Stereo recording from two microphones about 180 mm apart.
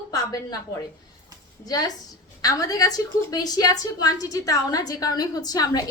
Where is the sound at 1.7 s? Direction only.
20° left (ahead or behind).